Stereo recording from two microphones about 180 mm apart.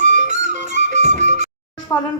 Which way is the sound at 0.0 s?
45° right (ahead or behind).